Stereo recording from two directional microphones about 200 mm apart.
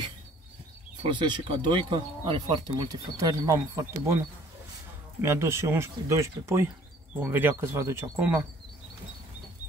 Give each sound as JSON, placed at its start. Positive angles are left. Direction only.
{"t": 1.0, "sound": "speech", "side_deg": -25}
{"t": 5.2, "sound": "speech", "side_deg": -15}